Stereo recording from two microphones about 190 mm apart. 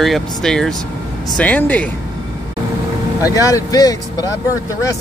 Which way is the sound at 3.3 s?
15° left (ahead or behind).